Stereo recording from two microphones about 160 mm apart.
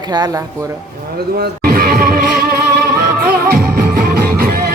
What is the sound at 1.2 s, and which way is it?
Music, 80° right.